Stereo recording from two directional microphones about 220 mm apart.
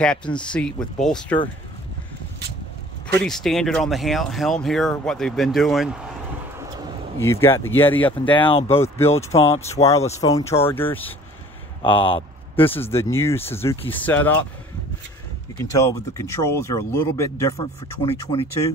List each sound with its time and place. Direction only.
0.0 s speech: 5° left (ahead or behind)
3.2 s speech: centre (ahead or behind)
7.2 s speech: 10° left (ahead or behind)
8.3 s speech: 25° left (ahead or behind)
8.7 s speech: 10° left (ahead or behind)
9.3 s speech: 25° left (ahead or behind)
10.1 s speech: 15° left (ahead or behind)
11.8 s a sound: 25° left (ahead or behind)
12.8 s speech: 10° left (ahead or behind)
15.7 s speech: 15° left (ahead or behind)